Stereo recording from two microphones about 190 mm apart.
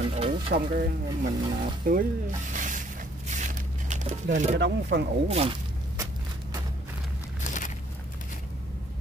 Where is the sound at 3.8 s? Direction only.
40° right (ahead or behind).